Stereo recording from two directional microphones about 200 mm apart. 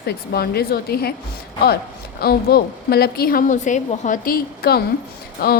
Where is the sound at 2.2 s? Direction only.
50° left (ahead or behind).